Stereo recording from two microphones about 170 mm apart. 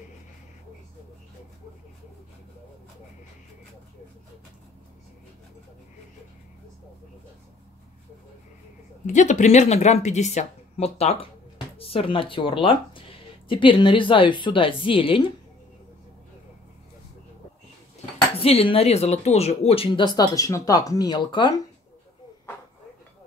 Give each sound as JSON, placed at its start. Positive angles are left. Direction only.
{"t": 9.0, "sound": "speech", "side_deg": 45}
{"t": 18.4, "sound": "speech", "side_deg": 35}